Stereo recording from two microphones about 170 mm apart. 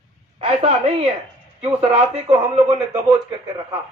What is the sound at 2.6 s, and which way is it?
Speech, 20° right (ahead or behind).